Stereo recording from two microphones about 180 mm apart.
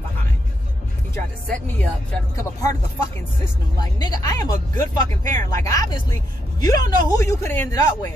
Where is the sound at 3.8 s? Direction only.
20° left (ahead or behind).